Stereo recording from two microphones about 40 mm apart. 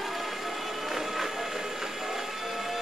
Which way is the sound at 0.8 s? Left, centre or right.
Centre.